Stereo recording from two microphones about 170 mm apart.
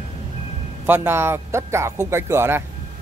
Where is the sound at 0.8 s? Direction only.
10° right (ahead or behind).